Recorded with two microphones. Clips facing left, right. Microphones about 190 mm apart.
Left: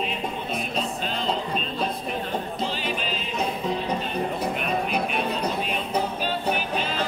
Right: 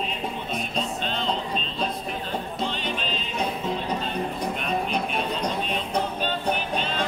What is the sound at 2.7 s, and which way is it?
Music, 5° left (ahead or behind).